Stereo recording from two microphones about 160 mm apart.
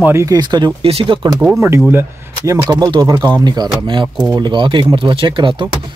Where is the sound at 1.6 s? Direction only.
15° right (ahead or behind).